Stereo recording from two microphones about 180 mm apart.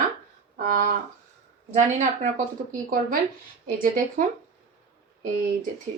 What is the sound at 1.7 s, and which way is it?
Speech, 40° right (ahead or behind).